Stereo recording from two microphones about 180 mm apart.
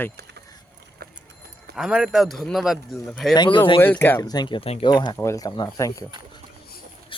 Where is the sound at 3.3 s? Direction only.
25° left (ahead or behind).